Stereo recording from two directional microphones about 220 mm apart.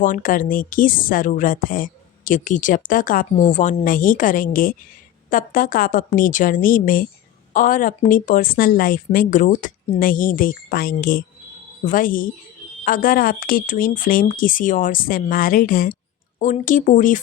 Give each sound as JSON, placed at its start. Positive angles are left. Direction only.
{"t": 0.0, "sound": "a woman's voice", "side_deg": 35}